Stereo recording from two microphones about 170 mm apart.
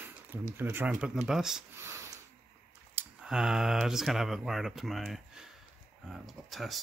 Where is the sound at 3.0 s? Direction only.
5° right (ahead or behind).